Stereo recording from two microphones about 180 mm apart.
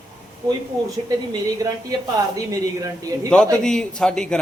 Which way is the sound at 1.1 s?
20° right (ahead or behind).